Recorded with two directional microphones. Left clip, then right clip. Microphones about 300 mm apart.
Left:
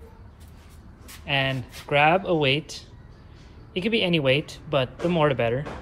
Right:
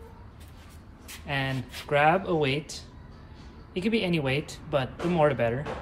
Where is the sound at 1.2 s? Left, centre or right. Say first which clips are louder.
Left 6 dB; centre.